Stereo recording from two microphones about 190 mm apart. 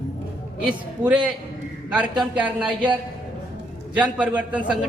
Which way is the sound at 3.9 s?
5° right (ahead or behind).